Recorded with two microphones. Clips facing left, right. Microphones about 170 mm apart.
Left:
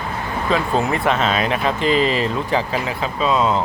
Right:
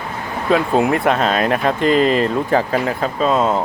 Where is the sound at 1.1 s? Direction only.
50° right (ahead or behind).